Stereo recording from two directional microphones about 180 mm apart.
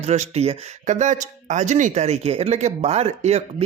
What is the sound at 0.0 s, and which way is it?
Speech, 35° right (ahead or behind).